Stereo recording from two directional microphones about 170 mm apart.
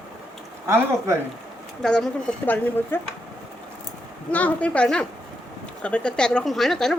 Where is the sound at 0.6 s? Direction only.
15° right (ahead or behind).